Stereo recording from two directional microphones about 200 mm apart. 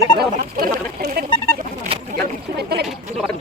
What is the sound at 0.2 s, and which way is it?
Speech, 45° right (ahead or behind).